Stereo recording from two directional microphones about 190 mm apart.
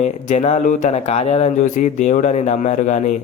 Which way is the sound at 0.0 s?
35° left (ahead or behind).